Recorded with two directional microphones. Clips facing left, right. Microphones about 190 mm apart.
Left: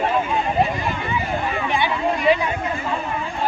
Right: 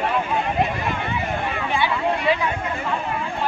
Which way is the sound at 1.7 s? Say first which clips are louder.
Even; 15° left (ahead or behind).